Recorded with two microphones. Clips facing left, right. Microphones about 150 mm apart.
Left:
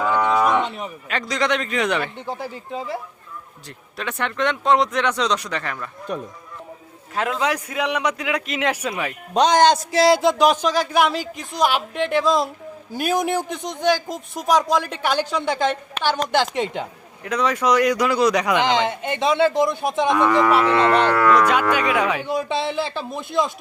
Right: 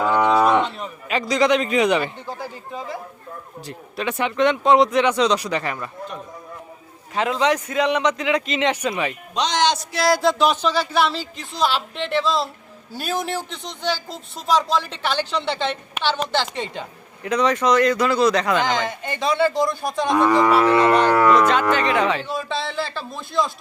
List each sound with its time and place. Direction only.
0.0 s cattle: 15° right (ahead or behind)
0.3 s cattle: 25° right (ahead or behind)
0.6 s a sound: 15° left (ahead or behind)
1.1 s speech: centre (ahead or behind)
2.1 s a man's voice: 25° left (ahead or behind)
3.7 s speech: 5° right (ahead or behind)
7.2 s speech: 5° left (ahead or behind)
9.3 s speech: 50° left (ahead or behind)
10.0 s speech: 25° left (ahead or behind)
17.2 s a man's voice: 5° left (ahead or behind); by 20.1 s 20° left (ahead or behind)
20.1 s livestock: 15° right (ahead or behind)
21.3 s speech: 10° left (ahead or behind)